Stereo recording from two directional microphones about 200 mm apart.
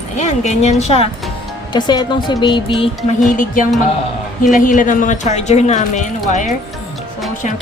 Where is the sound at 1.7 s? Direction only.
20° left (ahead or behind).